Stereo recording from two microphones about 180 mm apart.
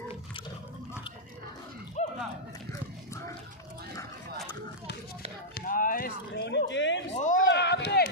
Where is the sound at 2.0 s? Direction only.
40° left (ahead or behind).